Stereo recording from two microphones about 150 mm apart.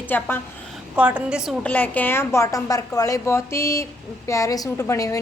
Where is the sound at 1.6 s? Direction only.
10° left (ahead or behind).